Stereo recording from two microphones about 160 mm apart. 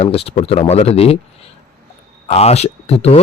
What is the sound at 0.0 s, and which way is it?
Speech, 40° left (ahead or behind).